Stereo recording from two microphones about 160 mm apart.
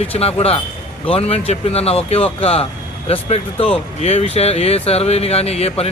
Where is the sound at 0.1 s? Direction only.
40° left (ahead or behind).